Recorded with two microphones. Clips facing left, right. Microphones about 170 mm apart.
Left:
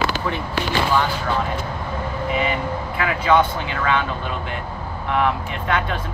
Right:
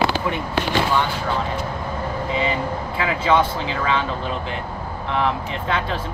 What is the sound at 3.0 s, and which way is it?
Speech, 25° right (ahead or behind).